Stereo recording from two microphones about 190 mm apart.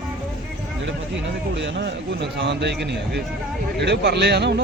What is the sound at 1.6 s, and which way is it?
A man's voice, 70° right (ahead or behind).